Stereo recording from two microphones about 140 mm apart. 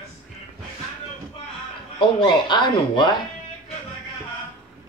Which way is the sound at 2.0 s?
35° left (ahead or behind).